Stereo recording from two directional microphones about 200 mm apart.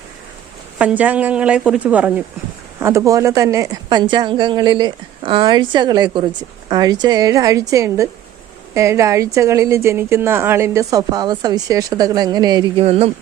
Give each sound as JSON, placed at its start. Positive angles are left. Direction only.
{"t": 0.8, "sound": "a woman's voice", "side_deg": -5}